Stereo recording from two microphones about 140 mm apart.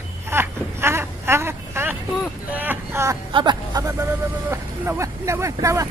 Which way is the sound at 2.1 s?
Centre (ahead or behind).